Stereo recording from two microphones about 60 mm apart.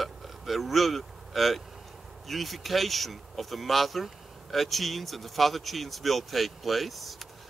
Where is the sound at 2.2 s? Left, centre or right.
Centre.